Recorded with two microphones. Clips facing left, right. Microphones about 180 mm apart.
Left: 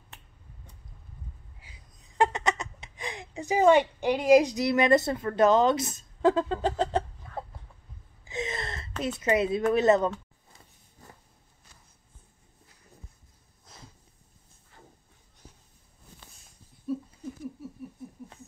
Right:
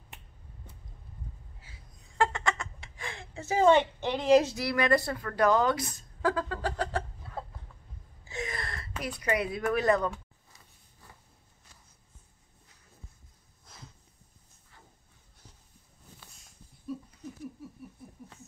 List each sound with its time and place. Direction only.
1.6 s speech: 20° left (ahead or behind)
8.3 s gasp: 20° left (ahead or behind)
9.0 s speech: 25° left (ahead or behind)
15.4 s a sound: 10° left (ahead or behind)